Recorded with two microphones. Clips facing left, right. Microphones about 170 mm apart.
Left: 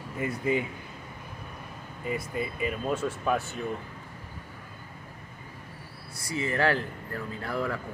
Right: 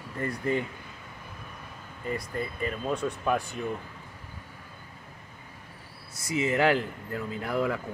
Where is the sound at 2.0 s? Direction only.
5° left (ahead or behind).